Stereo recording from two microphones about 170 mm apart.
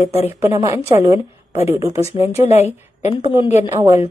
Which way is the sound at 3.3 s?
15° right (ahead or behind).